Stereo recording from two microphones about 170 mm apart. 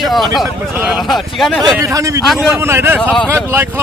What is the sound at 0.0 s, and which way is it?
Speech, centre (ahead or behind).